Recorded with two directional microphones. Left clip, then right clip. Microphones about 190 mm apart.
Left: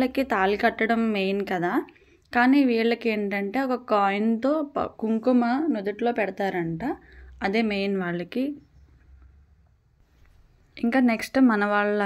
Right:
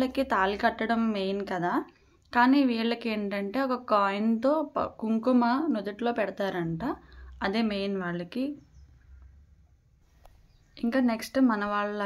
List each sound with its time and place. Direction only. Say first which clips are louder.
0.0 s a woman's voice: left 3 dB; 10° left (ahead or behind)
10.7 s a woman's voice: left 5 dB; 15° left (ahead or behind)